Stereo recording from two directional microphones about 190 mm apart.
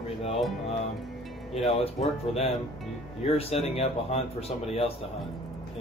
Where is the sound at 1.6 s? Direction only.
35° left (ahead or behind).